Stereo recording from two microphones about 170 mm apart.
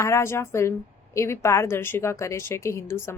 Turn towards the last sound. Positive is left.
turn(degrees=15)  # may be behind; listen again after turning